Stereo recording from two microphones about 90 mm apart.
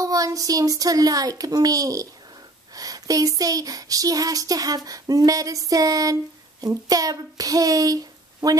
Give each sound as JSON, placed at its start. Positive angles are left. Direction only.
{"t": 0.0, "sound": "child singing", "side_deg": -40}